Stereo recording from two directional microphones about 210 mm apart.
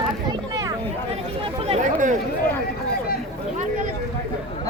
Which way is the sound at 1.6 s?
35° right (ahead or behind).